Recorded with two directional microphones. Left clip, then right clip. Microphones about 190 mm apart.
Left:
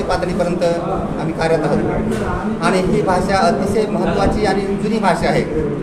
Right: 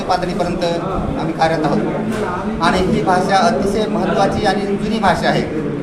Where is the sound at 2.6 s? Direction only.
5° left (ahead or behind).